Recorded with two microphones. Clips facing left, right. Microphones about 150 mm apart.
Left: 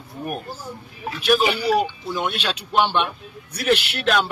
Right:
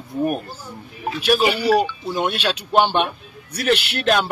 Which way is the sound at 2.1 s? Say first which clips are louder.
Right 4 dB; 40° right (ahead or behind).